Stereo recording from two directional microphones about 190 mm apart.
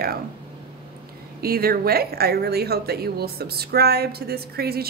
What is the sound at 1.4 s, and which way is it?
Speech, 50° right (ahead or behind).